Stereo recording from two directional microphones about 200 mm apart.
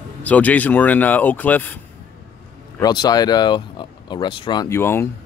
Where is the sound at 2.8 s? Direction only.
20° left (ahead or behind).